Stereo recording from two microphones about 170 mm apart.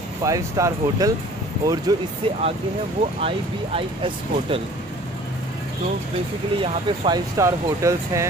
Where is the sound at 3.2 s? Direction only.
35° right (ahead or behind).